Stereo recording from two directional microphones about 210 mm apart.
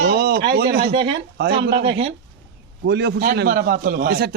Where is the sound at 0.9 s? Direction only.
25° right (ahead or behind).